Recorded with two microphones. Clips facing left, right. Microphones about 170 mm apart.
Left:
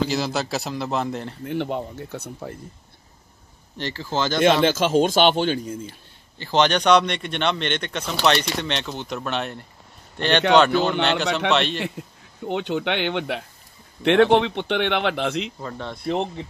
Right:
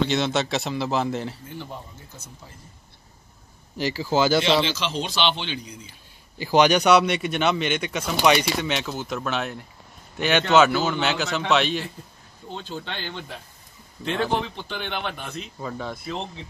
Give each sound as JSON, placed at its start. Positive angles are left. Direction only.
{"t": 0.0, "sound": "a man's voice", "side_deg": 0}
{"t": 1.4, "sound": "speech", "side_deg": 70}
{"t": 3.7, "sound": "a man's voice", "side_deg": -10}
{"t": 4.6, "sound": "speech", "side_deg": 50}
{"t": 5.9, "sound": "a man's voice", "side_deg": -10}
{"t": 12.4, "sound": "speech", "side_deg": 70}
{"t": 15.6, "sound": "a man's voice", "side_deg": -5}
{"t": 16.1, "sound": "speech", "side_deg": 60}